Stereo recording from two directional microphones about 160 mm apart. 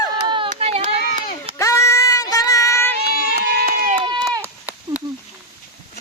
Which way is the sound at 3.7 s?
60° right (ahead or behind).